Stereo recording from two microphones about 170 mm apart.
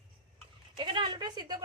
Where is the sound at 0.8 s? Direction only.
30° right (ahead or behind).